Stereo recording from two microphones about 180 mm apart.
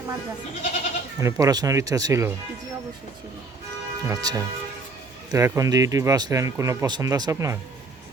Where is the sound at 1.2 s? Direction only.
20° right (ahead or behind).